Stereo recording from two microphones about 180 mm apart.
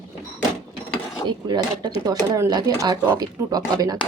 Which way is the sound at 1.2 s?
25° right (ahead or behind).